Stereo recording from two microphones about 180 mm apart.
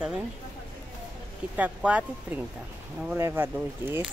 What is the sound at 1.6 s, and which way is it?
Speech, 5° right (ahead or behind).